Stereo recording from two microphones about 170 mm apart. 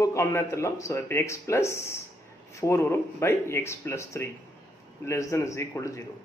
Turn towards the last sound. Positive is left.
turn(degrees=15)  # may be behind; listen again after turning